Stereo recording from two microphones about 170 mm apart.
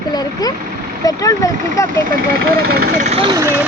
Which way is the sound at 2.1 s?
60° right (ahead or behind).